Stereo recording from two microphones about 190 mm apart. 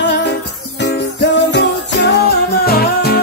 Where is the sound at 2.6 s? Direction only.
55° left (ahead or behind).